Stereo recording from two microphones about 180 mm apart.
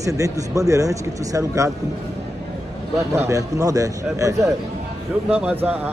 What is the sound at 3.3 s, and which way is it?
Speech, 20° right (ahead or behind).